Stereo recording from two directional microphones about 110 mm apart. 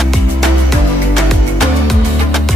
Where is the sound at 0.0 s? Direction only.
Centre (ahead or behind).